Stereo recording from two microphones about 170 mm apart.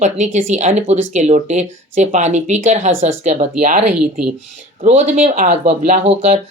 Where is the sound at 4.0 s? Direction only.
5° right (ahead or behind).